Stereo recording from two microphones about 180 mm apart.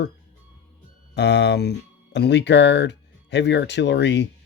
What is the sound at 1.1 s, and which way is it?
Speech, 75° left (ahead or behind).